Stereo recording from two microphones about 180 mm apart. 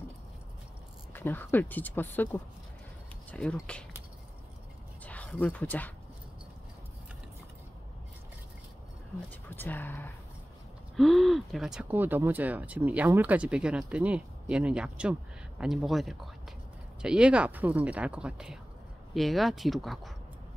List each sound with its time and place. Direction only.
1.1 s speech: 10° left (ahead or behind)
5.0 s speech: 10° left (ahead or behind)
9.5 s speech: 10° left (ahead or behind)